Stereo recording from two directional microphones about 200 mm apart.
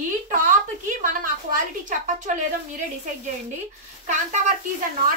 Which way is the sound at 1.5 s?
40° right (ahead or behind).